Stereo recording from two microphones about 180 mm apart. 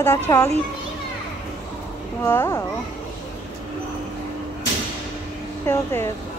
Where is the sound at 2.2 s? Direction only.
20° left (ahead or behind).